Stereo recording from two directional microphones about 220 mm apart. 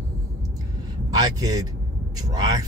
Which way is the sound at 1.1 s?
15° right (ahead or behind).